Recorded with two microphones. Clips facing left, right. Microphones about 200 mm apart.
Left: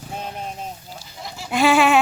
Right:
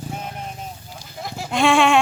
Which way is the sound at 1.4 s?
5° left (ahead or behind).